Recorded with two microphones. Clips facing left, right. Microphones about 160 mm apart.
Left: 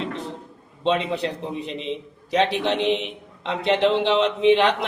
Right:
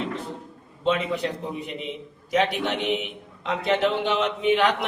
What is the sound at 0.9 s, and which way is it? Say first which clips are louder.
A man's voice: left 2 dB; 30° left (ahead or behind).